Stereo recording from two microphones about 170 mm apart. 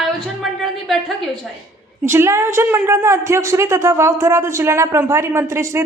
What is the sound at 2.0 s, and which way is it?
A man's voice, 15° right (ahead or behind).